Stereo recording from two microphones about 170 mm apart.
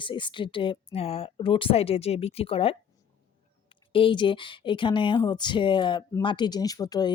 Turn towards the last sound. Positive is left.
turn(degrees=25)  # may be behind; listen again after turning